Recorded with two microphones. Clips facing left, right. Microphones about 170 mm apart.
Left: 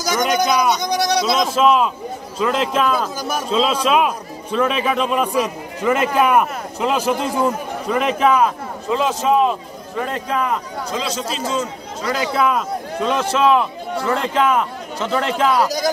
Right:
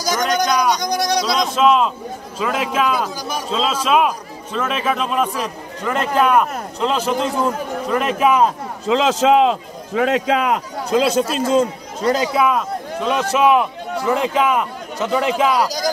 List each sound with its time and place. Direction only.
0.1 s a man's voice: 10° left (ahead or behind)
8.8 s a man's voice: 90° right; by 12.3 s 45° right (ahead or behind)
12.3 s a man's voice: 5° right (ahead or behind)
13.3 s a man's voice: 15° right (ahead or behind)